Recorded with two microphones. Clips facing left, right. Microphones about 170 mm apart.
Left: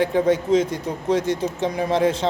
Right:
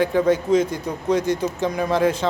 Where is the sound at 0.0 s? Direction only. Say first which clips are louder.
Even; 25° left (ahead or behind).